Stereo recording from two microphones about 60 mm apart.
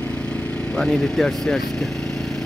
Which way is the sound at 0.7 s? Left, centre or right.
Centre.